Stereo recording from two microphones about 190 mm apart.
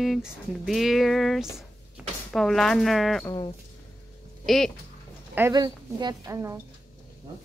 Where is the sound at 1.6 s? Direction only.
Centre (ahead or behind).